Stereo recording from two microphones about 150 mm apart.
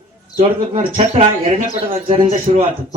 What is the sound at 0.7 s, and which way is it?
Speech, 40° right (ahead or behind).